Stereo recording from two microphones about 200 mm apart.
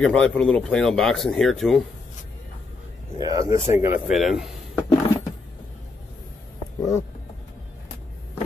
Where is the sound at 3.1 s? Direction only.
15° right (ahead or behind).